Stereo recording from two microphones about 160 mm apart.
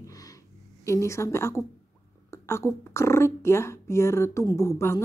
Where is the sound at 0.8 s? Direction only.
20° left (ahead or behind).